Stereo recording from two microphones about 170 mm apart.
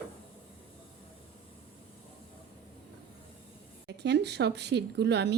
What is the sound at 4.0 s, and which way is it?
Speech, 85° right.